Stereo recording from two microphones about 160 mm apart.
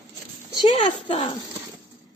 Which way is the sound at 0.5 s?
30° left (ahead or behind).